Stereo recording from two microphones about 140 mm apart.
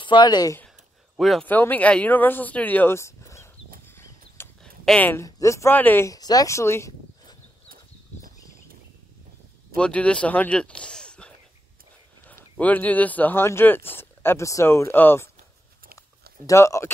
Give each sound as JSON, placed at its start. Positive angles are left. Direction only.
{"t": 0.0, "sound": "speech", "side_deg": 35}
{"t": 1.1, "sound": "speech", "side_deg": 0}
{"t": 1.5, "sound": "a man's voice", "side_deg": 10}
{"t": 3.8, "sound": "horse", "side_deg": 15}
{"t": 4.8, "sound": "a man's voice", "side_deg": 10}
{"t": 5.2, "sound": "speech", "side_deg": 20}
{"t": 7.6, "sound": "a sound", "side_deg": -90}
{"t": 9.8, "sound": "a man's voice", "side_deg": 10}
{"t": 16.4, "sound": "speech", "side_deg": 20}